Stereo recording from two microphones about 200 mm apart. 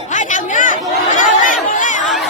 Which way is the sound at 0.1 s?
40° left (ahead or behind).